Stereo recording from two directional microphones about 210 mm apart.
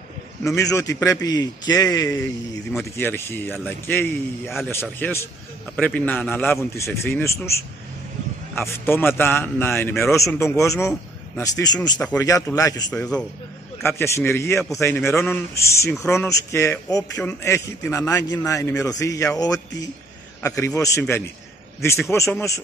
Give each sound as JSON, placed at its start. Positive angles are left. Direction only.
{"t": 0.6, "sound": "speech", "side_deg": 15}
{"t": 2.7, "sound": "speech", "side_deg": 5}